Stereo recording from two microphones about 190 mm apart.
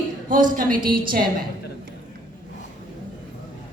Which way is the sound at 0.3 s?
45° right (ahead or behind).